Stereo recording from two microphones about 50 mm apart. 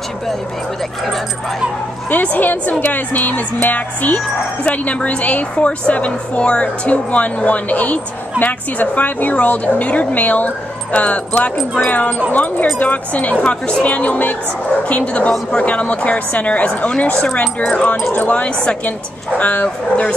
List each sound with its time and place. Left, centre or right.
2.3 s music: left
4.6 s a woman's voice: left
12.3 s music: left
12.7 s a woman's voice: left
19.3 s music: left